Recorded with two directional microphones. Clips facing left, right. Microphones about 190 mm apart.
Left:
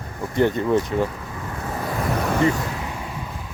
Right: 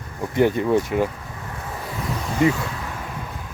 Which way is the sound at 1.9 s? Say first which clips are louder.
Left 6 dB; 60° left (ahead or behind).